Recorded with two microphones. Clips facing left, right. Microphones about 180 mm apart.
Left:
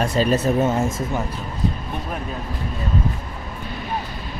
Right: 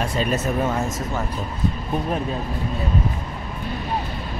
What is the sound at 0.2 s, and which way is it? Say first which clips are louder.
Speech: left 5 dB; 35° left (ahead or behind).